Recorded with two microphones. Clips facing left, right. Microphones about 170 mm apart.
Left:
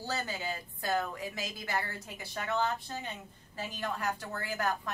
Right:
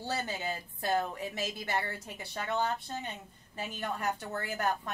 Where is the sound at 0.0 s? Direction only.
25° right (ahead or behind).